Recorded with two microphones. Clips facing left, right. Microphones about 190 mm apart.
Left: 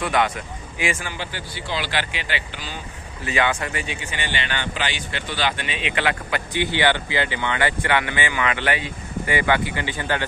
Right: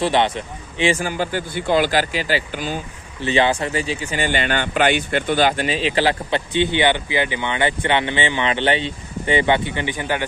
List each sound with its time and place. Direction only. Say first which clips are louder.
0.0 s speech: right 4 dB; 30° right (ahead or behind)
1.0 s speech: right 9 dB; 45° right (ahead or behind)
3.2 s speech: right 5 dB; 30° right (ahead or behind)